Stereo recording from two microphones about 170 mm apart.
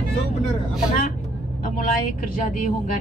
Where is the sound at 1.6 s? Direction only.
55° left (ahead or behind).